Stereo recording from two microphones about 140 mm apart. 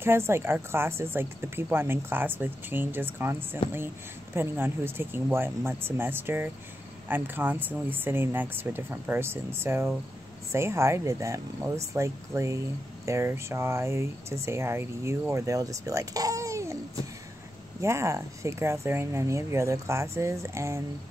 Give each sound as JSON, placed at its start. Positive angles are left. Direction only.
{"t": 0.0, "sound": "speech", "side_deg": -15}
{"t": 17.7, "sound": "speech", "side_deg": -20}